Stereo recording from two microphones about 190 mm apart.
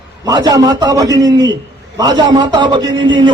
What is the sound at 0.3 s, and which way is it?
Speech, 20° right (ahead or behind).